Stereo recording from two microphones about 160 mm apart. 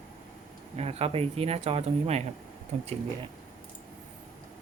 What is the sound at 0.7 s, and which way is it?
Speech, 40° right (ahead or behind).